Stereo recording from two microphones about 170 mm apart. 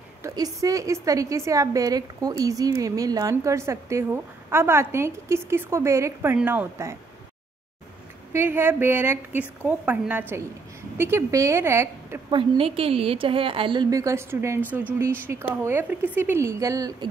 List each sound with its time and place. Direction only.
0.2 s a woman's voice: 20° right (ahead or behind)
8.3 s a woman's voice: 15° right (ahead or behind)
12.3 s a woman's voice: 30° right (ahead or behind)